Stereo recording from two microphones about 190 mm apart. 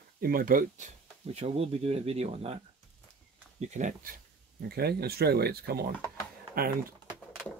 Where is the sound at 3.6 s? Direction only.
40° right (ahead or behind).